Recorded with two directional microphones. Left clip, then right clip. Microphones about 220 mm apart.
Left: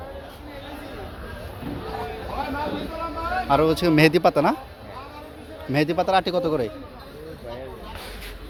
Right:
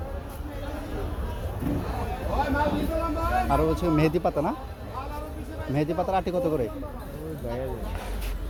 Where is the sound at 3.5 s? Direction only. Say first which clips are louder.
Left 10 dB; 35° left (ahead or behind).